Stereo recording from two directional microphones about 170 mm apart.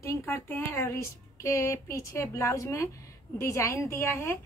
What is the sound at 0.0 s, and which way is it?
A woman's voice, 15° left (ahead or behind).